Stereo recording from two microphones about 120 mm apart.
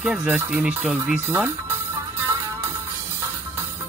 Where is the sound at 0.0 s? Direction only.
5° right (ahead or behind).